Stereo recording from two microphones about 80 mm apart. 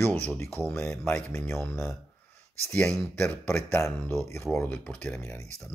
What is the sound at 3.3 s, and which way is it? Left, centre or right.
Speech, centre.